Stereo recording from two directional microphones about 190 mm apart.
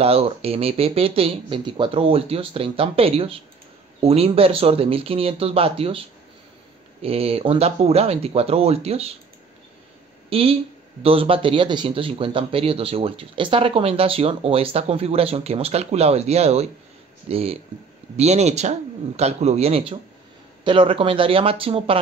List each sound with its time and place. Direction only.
0.0 s speech: 30° right (ahead or behind)
10.3 s speech: 30° right (ahead or behind)